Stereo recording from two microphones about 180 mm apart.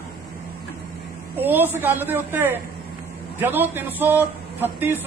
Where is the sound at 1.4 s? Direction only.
10° right (ahead or behind).